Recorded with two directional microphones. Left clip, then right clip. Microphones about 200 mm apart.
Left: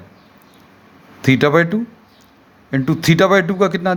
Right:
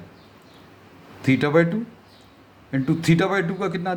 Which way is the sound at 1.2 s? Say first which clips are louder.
Left 5 dB; 45° left (ahead or behind).